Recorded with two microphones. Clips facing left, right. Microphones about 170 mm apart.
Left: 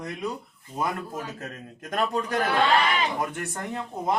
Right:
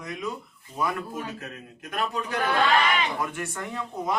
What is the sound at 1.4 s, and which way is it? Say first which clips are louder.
A man's voice: left 2 dB; 40° left (ahead or behind).